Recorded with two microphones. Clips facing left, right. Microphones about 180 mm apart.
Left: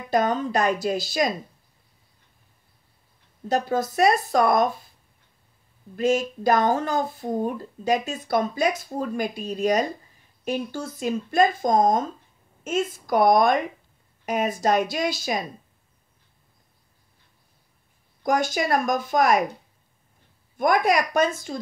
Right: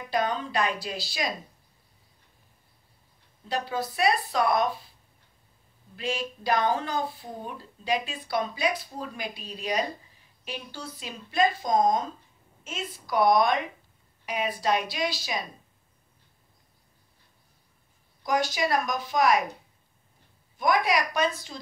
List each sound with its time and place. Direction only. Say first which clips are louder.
0.1 s speech: left 6 dB; 45° left (ahead or behind)
3.4 s speech: left 7 dB; 45° left (ahead or behind)
5.9 s speech: left 10 dB; 45° left (ahead or behind)
18.2 s speech: left 3 dB; 50° left (ahead or behind)
20.5 s speech: left 4 dB; 50° left (ahead or behind)